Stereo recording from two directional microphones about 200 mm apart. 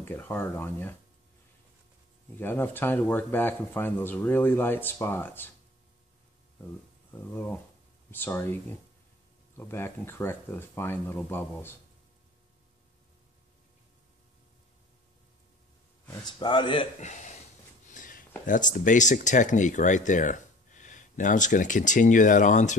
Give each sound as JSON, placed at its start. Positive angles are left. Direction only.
{"t": 0.0, "sound": "speech", "side_deg": 10}
{"t": 2.3, "sound": "speech", "side_deg": 10}
{"t": 6.6, "sound": "speech", "side_deg": 10}
{"t": 9.6, "sound": "speech", "side_deg": 10}
{"t": 16.1, "sound": "speech", "side_deg": 20}
{"t": 17.0, "sound": "speech", "side_deg": 35}
{"t": 17.8, "sound": "a sound", "side_deg": 40}
{"t": 18.5, "sound": "speech", "side_deg": 40}